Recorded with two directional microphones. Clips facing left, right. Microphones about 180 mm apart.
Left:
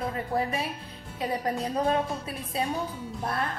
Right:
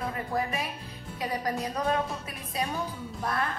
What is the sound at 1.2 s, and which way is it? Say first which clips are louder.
A woman's voice: left 2 dB; 30° left (ahead or behind).